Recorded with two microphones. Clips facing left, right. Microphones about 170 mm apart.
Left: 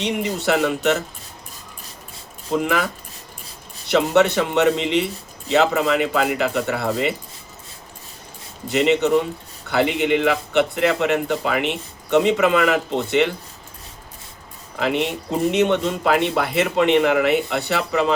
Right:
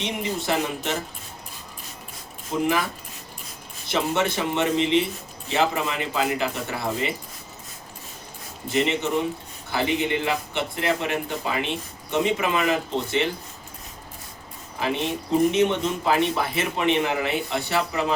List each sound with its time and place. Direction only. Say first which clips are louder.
0.0 s speech: left 5 dB; 70° left (ahead or behind)
2.6 s speech: left 2 dB; 70° left (ahead or behind)
8.7 s speech: left 6 dB; 70° left (ahead or behind)
14.8 s speech: left 4 dB; 70° left (ahead or behind)